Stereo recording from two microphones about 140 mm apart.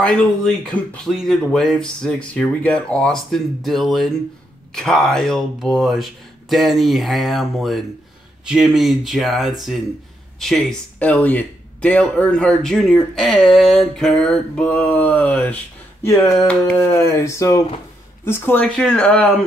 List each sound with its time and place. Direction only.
0.0 s speech: 5° left (ahead or behind)
16.1 s a sound: 20° left (ahead or behind)
16.4 s speech: 10° left (ahead or behind)